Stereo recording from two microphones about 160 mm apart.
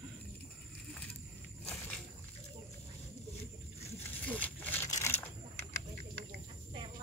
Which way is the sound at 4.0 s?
10° left (ahead or behind).